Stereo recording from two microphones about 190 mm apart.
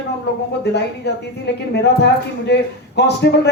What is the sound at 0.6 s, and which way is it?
A man's voice, 60° left (ahead or behind).